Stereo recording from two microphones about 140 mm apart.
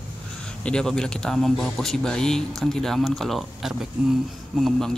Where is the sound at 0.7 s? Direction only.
5° left (ahead or behind).